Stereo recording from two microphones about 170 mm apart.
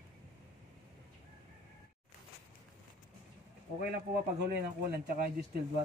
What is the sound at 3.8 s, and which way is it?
Speech, 70° right (ahead or behind).